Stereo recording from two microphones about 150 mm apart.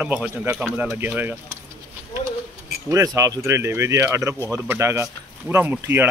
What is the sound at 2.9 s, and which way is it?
Speech, 20° right (ahead or behind).